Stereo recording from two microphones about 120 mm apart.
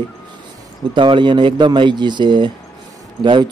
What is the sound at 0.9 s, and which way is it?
A man's voice, 40° right (ahead or behind).